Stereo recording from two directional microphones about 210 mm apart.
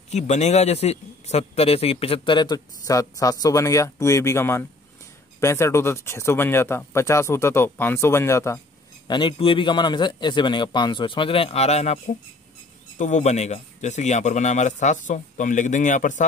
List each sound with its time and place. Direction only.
0.1 s a man's voice: 35° left (ahead or behind)